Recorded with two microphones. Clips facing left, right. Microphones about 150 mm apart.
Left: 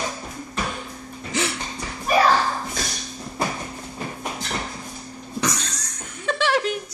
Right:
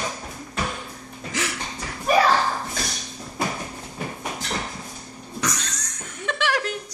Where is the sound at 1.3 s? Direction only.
30° left (ahead or behind).